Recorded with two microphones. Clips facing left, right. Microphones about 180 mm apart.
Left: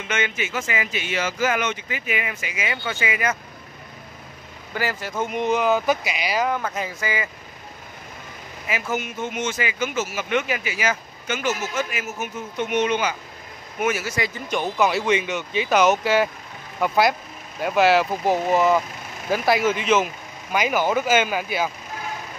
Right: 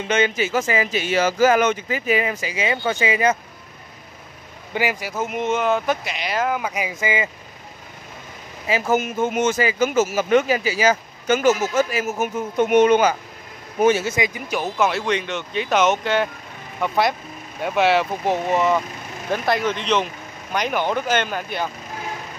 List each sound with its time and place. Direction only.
0.0 s speech: 35° right (ahead or behind)
4.7 s speech: 15° right (ahead or behind)
8.6 s speech: 35° right (ahead or behind)
13.7 s speech: 30° right (ahead or behind)
14.5 s speech: centre (ahead or behind)